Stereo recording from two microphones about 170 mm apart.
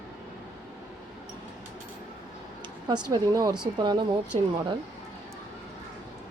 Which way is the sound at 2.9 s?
25° right (ahead or behind).